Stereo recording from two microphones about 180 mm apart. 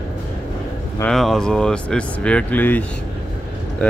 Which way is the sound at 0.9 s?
5° left (ahead or behind).